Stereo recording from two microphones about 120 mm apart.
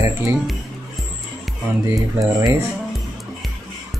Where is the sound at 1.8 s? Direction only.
25° right (ahead or behind).